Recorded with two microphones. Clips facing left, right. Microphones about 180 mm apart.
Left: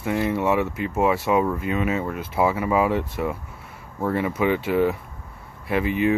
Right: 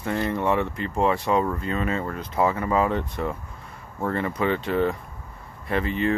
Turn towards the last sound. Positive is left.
turn(degrees=10)  # may be behind; listen again after turning